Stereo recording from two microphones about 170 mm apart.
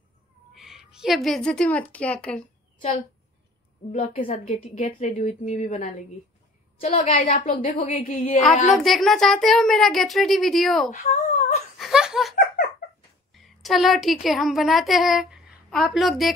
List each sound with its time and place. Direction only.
0.6 s a woman's voice: centre (ahead or behind)
3.9 s a woman's voice: 40° left (ahead or behind)
8.7 s speech: centre (ahead or behind)
10.9 s speech: 40° left (ahead or behind)
11.8 s laughter: 5° right (ahead or behind)
13.3 s speech: centre (ahead or behind)